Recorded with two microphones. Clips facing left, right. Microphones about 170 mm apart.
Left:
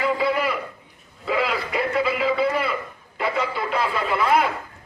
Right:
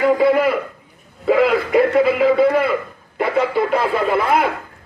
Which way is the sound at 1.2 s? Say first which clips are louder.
Right 9 dB; 50° right (ahead or behind).